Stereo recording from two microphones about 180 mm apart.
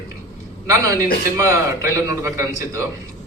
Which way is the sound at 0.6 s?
20° right (ahead or behind).